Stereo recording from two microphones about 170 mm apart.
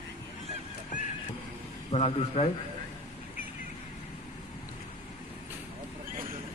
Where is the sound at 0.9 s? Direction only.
50° left (ahead or behind).